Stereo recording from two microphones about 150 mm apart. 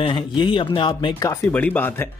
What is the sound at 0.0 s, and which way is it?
Speech, 30° left (ahead or behind).